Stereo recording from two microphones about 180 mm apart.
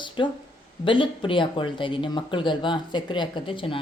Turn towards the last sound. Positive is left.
turn(degrees=30)  # may be behind; listen again after turning